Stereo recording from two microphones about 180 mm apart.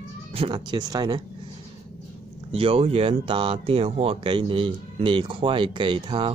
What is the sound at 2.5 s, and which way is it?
Speech, 30° right (ahead or behind).